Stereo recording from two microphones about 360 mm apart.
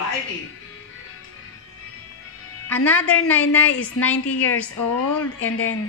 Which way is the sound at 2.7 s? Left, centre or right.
Centre.